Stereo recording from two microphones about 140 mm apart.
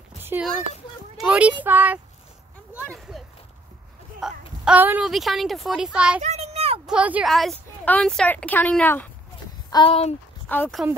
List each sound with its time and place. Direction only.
0.2 s a sound: 15° right (ahead or behind)
1.1 s speech: 5° right (ahead or behind)
2.9 s a sound: centre (ahead or behind)
4.2 s speech: 10° right (ahead or behind)
5.0 s speech: centre (ahead or behind)
6.2 s a sound: 50° right (ahead or behind)
6.9 s speech: 10° right (ahead or behind); by 9.1 s 15° left (ahead or behind)
9.8 s speech: 45° left (ahead or behind)
10.5 s speech: 10° left (ahead or behind)